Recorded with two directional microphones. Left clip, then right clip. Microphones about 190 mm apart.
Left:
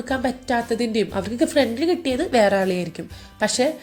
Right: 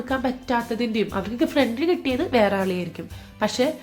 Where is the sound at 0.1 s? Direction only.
10° left (ahead or behind).